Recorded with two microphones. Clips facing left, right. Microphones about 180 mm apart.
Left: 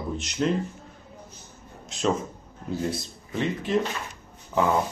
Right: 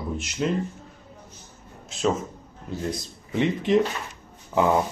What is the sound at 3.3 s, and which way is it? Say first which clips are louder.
Speech: right 5 dB; 20° right (ahead or behind).